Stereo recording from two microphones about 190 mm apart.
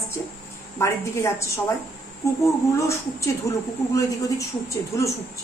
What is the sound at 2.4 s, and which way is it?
Speech, 15° left (ahead or behind).